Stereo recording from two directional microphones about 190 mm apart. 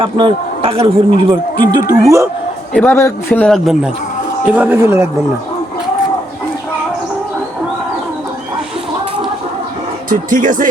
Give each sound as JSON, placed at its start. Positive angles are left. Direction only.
{"t": 0.0, "sound": "a man's voice", "side_deg": -25}
{"t": 1.3, "sound": "speech", "side_deg": -20}
{"t": 2.7, "sound": "a man's voice", "side_deg": 10}
{"t": 4.5, "sound": "speech", "side_deg": -10}
{"t": 10.1, "sound": "speech", "side_deg": -45}